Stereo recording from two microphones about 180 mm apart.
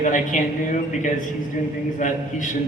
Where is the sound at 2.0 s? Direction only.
45° left (ahead or behind).